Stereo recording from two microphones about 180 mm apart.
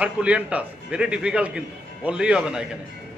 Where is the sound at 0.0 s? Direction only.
10° right (ahead or behind).